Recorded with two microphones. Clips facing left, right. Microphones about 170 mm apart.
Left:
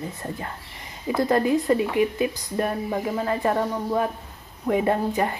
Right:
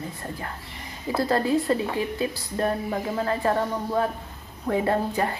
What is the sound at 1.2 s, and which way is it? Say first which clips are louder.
Speech: left 2 dB; 15° left (ahead or behind).